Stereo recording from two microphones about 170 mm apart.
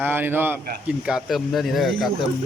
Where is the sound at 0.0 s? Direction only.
10° right (ahead or behind).